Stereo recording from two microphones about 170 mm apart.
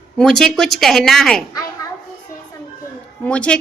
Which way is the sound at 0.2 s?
5° left (ahead or behind).